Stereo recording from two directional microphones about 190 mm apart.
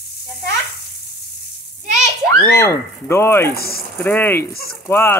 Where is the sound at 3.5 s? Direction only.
55° left (ahead or behind).